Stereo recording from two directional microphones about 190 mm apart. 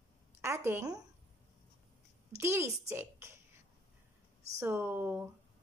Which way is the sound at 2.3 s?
15° right (ahead or behind).